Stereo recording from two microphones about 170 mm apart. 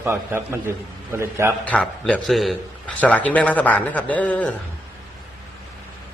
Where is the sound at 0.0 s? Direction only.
15° right (ahead or behind).